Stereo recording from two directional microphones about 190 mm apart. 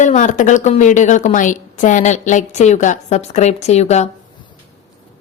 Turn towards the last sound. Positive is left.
turn(degrees=35)  # may be behind; listen again after turning